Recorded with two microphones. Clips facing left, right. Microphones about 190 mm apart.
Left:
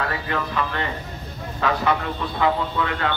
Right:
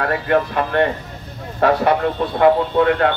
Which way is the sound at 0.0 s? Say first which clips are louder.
Right 8 dB; 55° right (ahead or behind).